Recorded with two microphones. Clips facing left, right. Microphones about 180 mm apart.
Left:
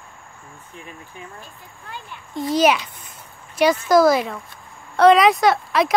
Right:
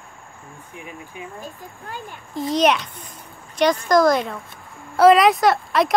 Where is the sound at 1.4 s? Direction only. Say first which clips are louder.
Right 6 dB; 40° right (ahead or behind).